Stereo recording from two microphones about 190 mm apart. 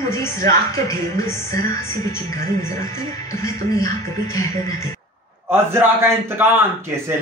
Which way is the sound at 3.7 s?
20° left (ahead or behind).